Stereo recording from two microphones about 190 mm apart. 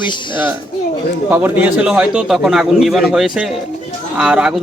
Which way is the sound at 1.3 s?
10° right (ahead or behind).